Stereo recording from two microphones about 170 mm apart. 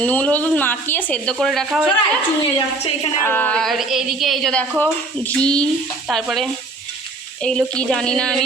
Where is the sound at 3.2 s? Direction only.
10° left (ahead or behind).